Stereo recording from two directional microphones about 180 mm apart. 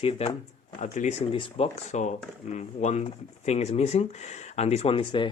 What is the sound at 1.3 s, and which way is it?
Speech, 30° left (ahead or behind).